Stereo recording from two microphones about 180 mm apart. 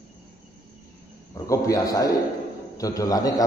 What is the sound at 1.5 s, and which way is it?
A man's voice, 20° left (ahead or behind).